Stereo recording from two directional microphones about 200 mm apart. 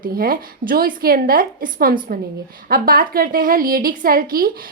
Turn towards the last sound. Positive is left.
turn(degrees=-45)  # may be behind; listen again after turning